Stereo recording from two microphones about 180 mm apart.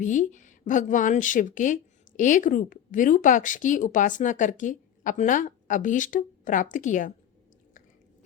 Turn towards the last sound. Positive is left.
turn(degrees=45)  # may be behind; listen again after turning